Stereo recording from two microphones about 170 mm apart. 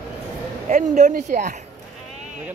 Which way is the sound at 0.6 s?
45° right (ahead or behind).